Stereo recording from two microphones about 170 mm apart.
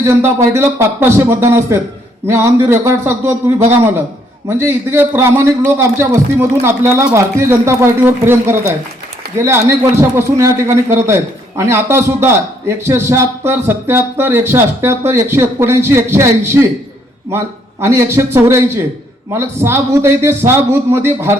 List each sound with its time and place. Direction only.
0.0 s a man's voice: 15° right (ahead or behind)